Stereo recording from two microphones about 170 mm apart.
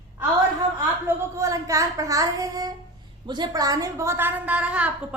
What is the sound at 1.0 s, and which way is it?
A woman's voice, 15° right (ahead or behind).